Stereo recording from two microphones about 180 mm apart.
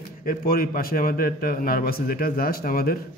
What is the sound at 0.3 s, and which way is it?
A man's voice, 55° left (ahead or behind).